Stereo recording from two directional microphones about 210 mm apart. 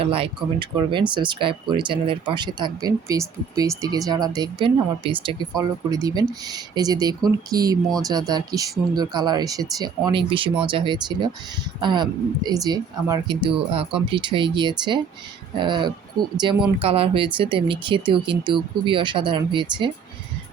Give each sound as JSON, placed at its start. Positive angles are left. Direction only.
{"t": 0.0, "sound": "speech", "side_deg": -25}